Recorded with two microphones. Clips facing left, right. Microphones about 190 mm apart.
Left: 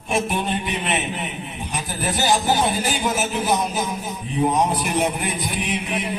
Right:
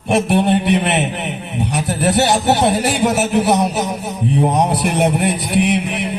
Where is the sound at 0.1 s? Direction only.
70° right (ahead or behind).